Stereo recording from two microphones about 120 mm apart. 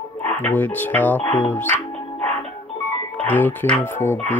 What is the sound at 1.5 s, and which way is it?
Speech, 15° left (ahead or behind).